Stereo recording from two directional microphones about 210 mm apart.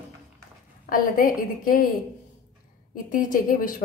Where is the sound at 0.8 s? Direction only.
40° left (ahead or behind).